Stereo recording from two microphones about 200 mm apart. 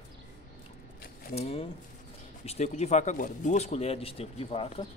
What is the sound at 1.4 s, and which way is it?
Speech, 30° left (ahead or behind).